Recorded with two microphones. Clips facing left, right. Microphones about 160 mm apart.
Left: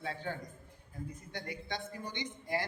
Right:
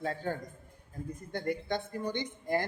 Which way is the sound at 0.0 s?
45° right (ahead or behind).